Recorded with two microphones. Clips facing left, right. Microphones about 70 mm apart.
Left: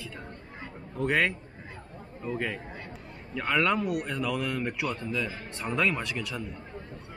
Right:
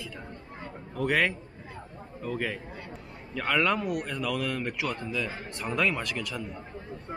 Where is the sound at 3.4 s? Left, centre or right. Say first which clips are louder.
Even; centre.